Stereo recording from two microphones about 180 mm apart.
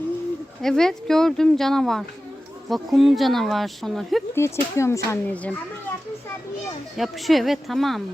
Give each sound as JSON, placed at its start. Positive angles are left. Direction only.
{"t": 0.6, "sound": "speech", "side_deg": 5}
{"t": 4.4, "sound": "speech", "side_deg": 15}
{"t": 6.9, "sound": "speech", "side_deg": 0}